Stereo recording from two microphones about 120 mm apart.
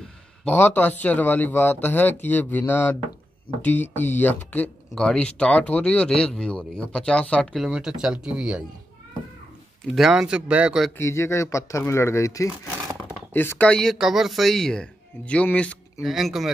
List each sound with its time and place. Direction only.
0.5 s speech: 15° left (ahead or behind)
7.6 s speech: 5° right (ahead or behind)
9.9 s speech: 5° right (ahead or behind)
11.0 s speech: 25° left (ahead or behind)
16.0 s speech: centre (ahead or behind)